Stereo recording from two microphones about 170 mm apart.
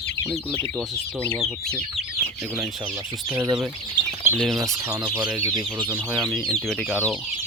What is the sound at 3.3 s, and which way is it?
Speech, 10° right (ahead or behind).